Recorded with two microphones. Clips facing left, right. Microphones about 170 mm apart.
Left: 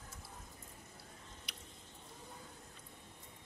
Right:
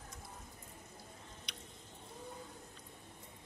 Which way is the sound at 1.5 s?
5° left (ahead or behind).